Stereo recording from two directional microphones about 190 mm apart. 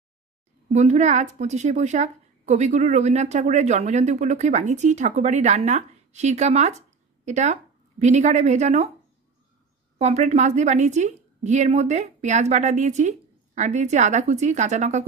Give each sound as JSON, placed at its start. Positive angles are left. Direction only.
{"t": 0.7, "sound": "a woman's voice", "side_deg": -40}
{"t": 9.9, "sound": "a woman's voice", "side_deg": -35}